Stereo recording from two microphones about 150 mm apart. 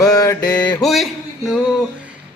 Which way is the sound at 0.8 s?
Centre (ahead or behind).